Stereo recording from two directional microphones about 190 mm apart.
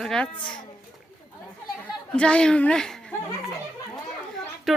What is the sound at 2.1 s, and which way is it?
A child's voice, 5° left (ahead or behind).